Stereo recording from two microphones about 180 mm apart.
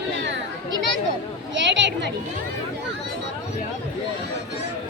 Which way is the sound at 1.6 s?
80° right.